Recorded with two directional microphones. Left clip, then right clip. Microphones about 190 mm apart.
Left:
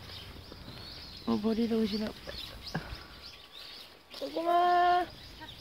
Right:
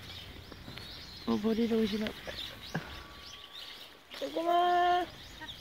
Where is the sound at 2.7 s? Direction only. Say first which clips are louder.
Even; centre (ahead or behind).